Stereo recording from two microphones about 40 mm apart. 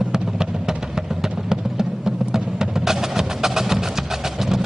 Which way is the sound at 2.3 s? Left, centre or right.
Centre.